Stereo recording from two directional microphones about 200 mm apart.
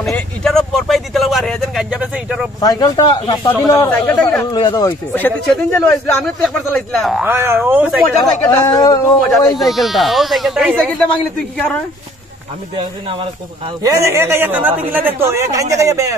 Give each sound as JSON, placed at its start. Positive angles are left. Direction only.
{"t": 0.0, "sound": "speech", "side_deg": 0}
{"t": 2.6, "sound": "speech", "side_deg": 20}
{"t": 4.5, "sound": "speech", "side_deg": 20}
{"t": 7.2, "sound": "speech", "side_deg": -10}
{"t": 8.5, "sound": "speech", "side_deg": 15}
{"t": 9.6, "sound": "speech", "side_deg": 0}
{"t": 11.1, "sound": "speech", "side_deg": 5}
{"t": 13.8, "sound": "speech", "side_deg": -15}